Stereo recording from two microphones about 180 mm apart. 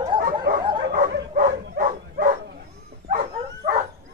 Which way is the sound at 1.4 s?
50° right (ahead or behind).